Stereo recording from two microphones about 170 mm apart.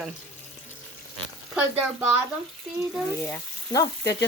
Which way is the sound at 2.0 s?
10° right (ahead or behind).